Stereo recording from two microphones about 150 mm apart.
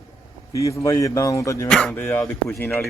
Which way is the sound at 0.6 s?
20° left (ahead or behind).